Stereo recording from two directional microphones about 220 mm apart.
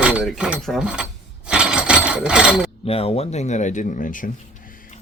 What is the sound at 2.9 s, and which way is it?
Speech, 25° left (ahead or behind).